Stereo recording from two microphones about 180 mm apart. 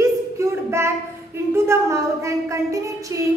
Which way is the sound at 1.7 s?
15° right (ahead or behind).